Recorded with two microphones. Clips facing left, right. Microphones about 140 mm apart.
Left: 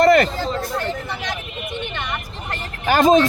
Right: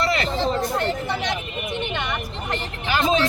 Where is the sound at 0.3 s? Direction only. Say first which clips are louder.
Right 2 dB; 25° right (ahead or behind).